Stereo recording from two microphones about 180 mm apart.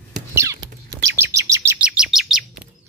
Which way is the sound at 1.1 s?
15° right (ahead or behind).